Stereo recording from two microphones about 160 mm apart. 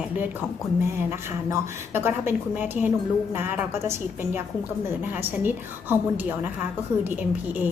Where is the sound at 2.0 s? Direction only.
15° right (ahead or behind).